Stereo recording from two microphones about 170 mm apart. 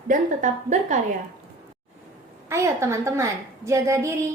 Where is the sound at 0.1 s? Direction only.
45° right (ahead or behind).